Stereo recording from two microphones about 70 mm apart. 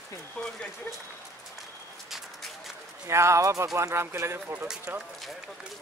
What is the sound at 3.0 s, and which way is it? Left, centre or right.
Speech, right.